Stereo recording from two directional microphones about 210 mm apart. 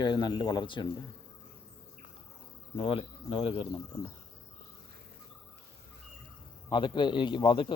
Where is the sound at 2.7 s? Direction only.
25° left (ahead or behind).